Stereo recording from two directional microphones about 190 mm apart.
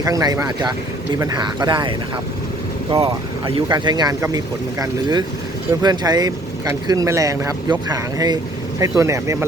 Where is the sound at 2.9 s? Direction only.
25° right (ahead or behind).